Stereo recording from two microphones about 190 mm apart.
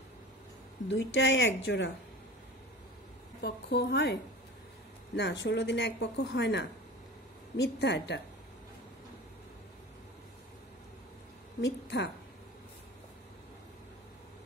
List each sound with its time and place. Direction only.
0.8 s speech: 75° left (ahead or behind)
3.4 s a woman's voice: 60° left (ahead or behind)
11.6 s a woman's voice: 65° left (ahead or behind)